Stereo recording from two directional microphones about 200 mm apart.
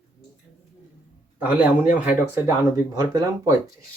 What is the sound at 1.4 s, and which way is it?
Speech, 5° right (ahead or behind).